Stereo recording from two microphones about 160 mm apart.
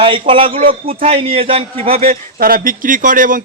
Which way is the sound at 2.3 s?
60° right (ahead or behind).